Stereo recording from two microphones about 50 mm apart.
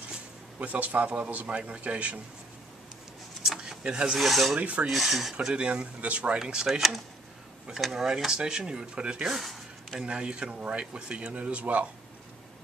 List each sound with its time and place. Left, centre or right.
0.1 s speech: right
3.5 s a sound: centre
4.2 s speech: centre
4.6 s speech: right
4.8 s speech: centre
5.3 s speech: centre
6.4 s speech: centre
9.3 s a sound: centre
9.9 s speech: centre